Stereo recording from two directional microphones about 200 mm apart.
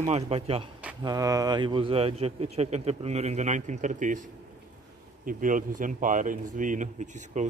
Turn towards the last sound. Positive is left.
turn(degrees=-40)  # may be behind; listen again after turning